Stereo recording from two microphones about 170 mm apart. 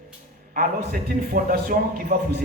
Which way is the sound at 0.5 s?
55° right (ahead or behind).